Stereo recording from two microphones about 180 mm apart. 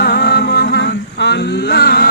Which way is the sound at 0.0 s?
60° left (ahead or behind).